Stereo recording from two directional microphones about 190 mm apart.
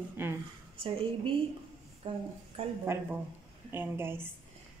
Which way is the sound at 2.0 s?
30° right (ahead or behind).